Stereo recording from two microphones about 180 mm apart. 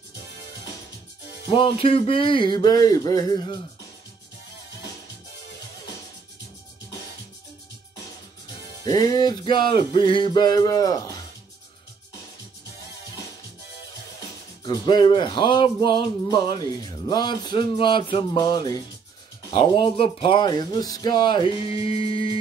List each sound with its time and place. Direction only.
1.5 s music: 30° left (ahead or behind)
8.8 s music: 20° left (ahead or behind)
14.6 s music: 25° left (ahead or behind)